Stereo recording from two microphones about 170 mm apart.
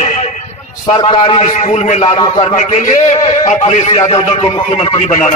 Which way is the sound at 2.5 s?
45° left (ahead or behind).